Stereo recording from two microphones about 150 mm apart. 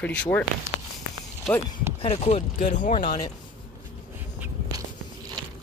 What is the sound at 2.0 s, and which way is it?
Speech, 45° left (ahead or behind).